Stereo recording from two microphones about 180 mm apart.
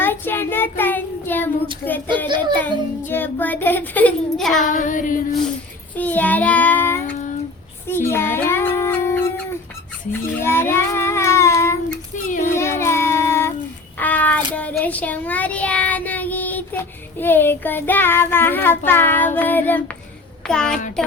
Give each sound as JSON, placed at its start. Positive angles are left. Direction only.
{"t": 0.0, "sound": "child singing", "side_deg": 10}
{"t": 2.6, "sound": "child singing", "side_deg": 10}
{"t": 4.6, "sound": "child singing", "side_deg": 45}
{"t": 6.0, "sound": "child singing", "side_deg": 10}
{"t": 12.1, "sound": "child singing", "side_deg": 45}
{"t": 12.5, "sound": "child singing", "side_deg": 15}
{"t": 20.5, "sound": "a child's voice", "side_deg": 5}